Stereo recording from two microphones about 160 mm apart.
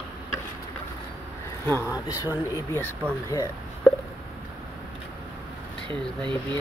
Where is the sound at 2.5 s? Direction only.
20° left (ahead or behind).